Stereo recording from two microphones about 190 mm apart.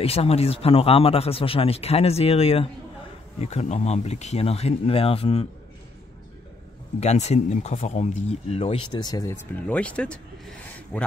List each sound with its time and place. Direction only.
0.0 s speech: 30° left (ahead or behind)
7.0 s speech: 35° left (ahead or behind); by 11.1 s 5° left (ahead or behind)